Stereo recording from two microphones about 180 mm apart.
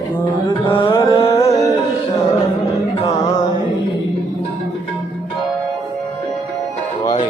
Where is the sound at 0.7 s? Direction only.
25° left (ahead or behind).